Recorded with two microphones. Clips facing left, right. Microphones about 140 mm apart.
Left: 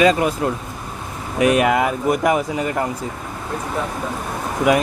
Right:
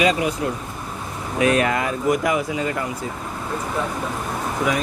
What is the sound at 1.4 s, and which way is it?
Speech, 15° left (ahead or behind).